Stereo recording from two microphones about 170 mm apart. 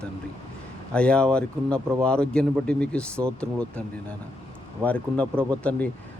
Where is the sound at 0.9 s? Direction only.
5° left (ahead or behind).